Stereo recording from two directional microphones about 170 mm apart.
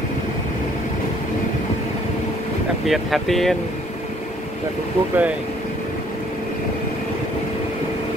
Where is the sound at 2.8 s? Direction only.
Centre (ahead or behind).